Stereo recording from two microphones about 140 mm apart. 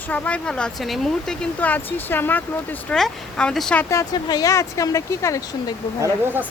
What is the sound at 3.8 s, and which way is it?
Speech, 25° left (ahead or behind).